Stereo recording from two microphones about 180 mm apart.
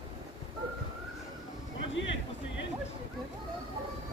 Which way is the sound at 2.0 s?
90° left.